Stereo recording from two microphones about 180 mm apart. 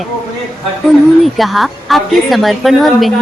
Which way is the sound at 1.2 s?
Centre (ahead or behind).